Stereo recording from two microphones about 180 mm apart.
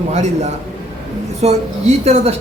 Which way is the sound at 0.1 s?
40° right (ahead or behind).